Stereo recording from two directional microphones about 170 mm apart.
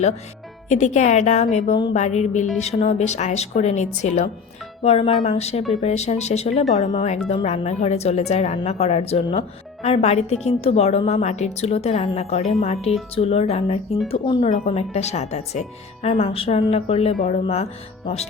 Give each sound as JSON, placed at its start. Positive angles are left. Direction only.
{"t": 0.7, "sound": "a woman's voice", "side_deg": 45}